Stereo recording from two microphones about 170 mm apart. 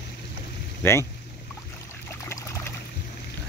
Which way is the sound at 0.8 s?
10° left (ahead or behind).